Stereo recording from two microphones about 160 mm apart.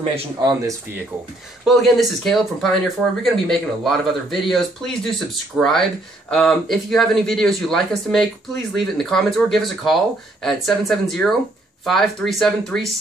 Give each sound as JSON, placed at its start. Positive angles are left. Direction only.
{"t": 0.4, "sound": "speech", "side_deg": -25}
{"t": 1.6, "sound": "speech", "side_deg": 0}